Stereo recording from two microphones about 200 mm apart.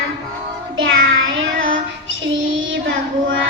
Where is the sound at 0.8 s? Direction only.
80° right.